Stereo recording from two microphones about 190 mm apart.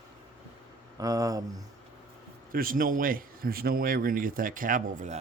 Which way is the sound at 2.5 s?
50° right (ahead or behind).